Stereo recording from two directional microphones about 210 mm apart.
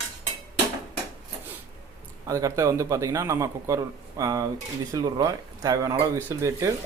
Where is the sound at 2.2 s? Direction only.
15° right (ahead or behind).